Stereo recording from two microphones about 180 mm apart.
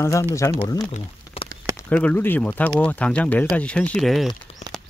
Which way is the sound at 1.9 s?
10° left (ahead or behind).